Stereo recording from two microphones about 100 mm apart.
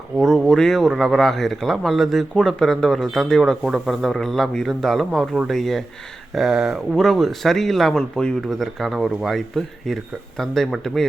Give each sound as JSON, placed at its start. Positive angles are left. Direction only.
{"t": 0.2, "sound": "speech", "side_deg": 5}